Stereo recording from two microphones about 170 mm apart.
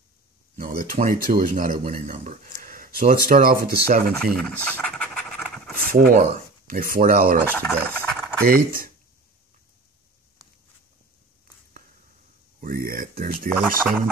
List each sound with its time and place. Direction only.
0.6 s speech: 50° right (ahead or behind)
4.1 s scratch: 5° left (ahead or behind)
5.9 s speech: 60° right (ahead or behind)
7.6 s stir: 10° left (ahead or behind)
8.5 s speech: 55° right (ahead or behind)
12.5 s a sound: 55° right (ahead or behind)
13.2 s speech: 55° right (ahead or behind)
13.6 s speech: 5° right (ahead or behind)